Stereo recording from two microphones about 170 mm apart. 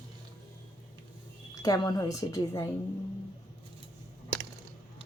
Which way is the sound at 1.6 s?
20° left (ahead or behind).